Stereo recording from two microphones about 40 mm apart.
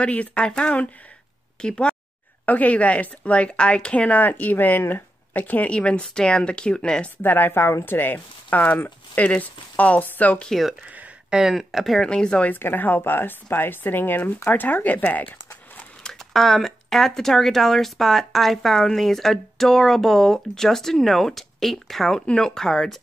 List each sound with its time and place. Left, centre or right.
0.0 s a woman's voice: left
0.5 s a woman's voice: left
2.4 s a woman's voice: left
5.7 s speech: left
7.2 s speech: left
9.2 s speech: left
11.2 s speech: centre
11.5 s speech: centre
12.1 s speech: left
12.5 s speech: left
16.0 s speech: centre
22.2 s speech: centre